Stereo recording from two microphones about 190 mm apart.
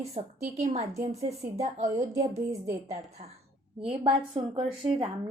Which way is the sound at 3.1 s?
35° right (ahead or behind).